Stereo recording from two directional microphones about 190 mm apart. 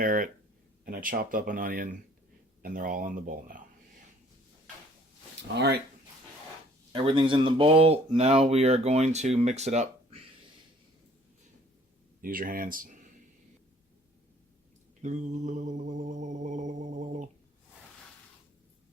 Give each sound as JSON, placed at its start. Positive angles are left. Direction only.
{"t": 0.0, "sound": "a sound", "side_deg": -45}
{"t": 0.9, "sound": "speech", "side_deg": -50}
{"t": 5.5, "sound": "speech", "side_deg": -60}
{"t": 6.9, "sound": "speech", "side_deg": -25}
{"t": 12.2, "sound": "speech", "side_deg": -50}
{"t": 15.0, "sound": "speech", "side_deg": -40}